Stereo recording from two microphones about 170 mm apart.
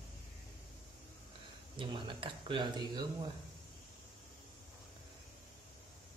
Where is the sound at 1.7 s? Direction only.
30° right (ahead or behind).